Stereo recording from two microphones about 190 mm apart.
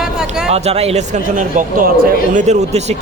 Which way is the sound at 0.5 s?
35° right (ahead or behind).